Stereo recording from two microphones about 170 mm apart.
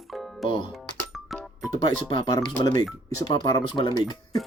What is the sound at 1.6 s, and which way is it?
Speech, 25° left (ahead or behind).